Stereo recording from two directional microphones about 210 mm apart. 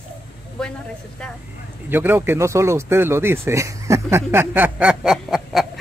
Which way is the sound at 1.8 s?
10° right (ahead or behind).